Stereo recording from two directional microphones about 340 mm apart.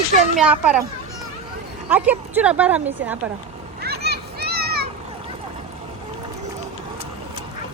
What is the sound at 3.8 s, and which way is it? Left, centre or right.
Children playing, right.